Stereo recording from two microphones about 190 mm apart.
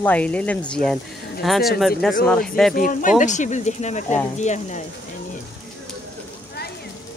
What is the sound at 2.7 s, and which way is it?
Speech, 45° left (ahead or behind).